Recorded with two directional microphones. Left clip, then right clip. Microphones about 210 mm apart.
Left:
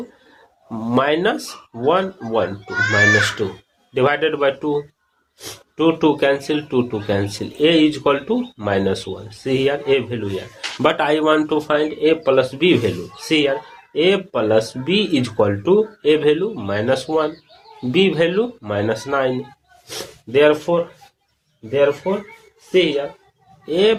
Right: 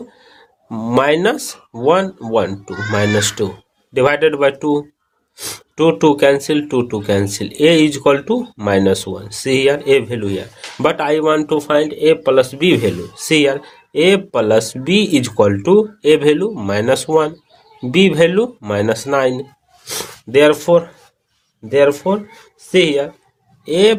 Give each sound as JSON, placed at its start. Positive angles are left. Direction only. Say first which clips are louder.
{"t": 0.7, "sound": "speech", "louder": "right 4 dB", "side_deg": -35}